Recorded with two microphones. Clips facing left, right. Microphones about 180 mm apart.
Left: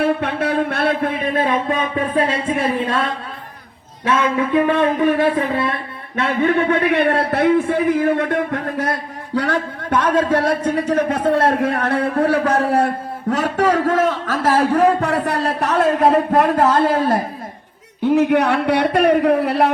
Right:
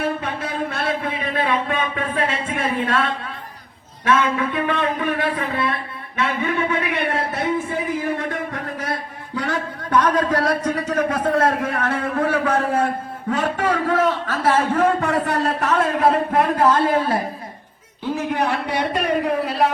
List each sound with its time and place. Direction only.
0.2 s a sound: 65° left (ahead or behind); by 3.0 s 35° left (ahead or behind)
4.0 s speech: 25° left (ahead or behind)
6.1 s a man's voice: 55° left (ahead or behind)
9.4 s a man's voice: 30° left (ahead or behind)
18.0 s a man's voice: 65° left (ahead or behind)